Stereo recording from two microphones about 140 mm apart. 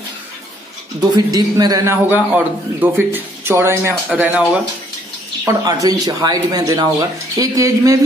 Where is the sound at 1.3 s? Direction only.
25° right (ahead or behind).